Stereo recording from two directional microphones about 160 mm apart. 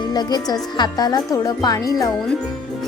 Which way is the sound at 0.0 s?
25° left (ahead or behind).